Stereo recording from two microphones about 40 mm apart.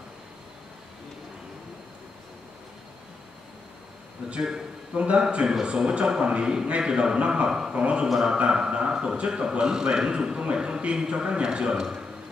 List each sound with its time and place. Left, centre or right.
4.4 s a man's voice: centre
4.9 s a man's voice: right
5.3 s a man's voice: right